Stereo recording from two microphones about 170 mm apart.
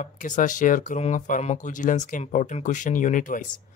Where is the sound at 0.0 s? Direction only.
50° left (ahead or behind).